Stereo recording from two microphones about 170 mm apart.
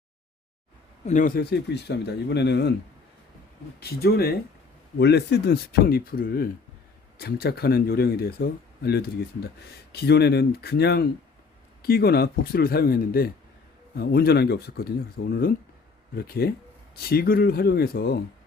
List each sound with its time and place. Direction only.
1.0 s speech: 45° left (ahead or behind)
1.4 s speech: 75° left (ahead or behind)
3.8 s speech: 70° left (ahead or behind)
4.9 s speech: 80° left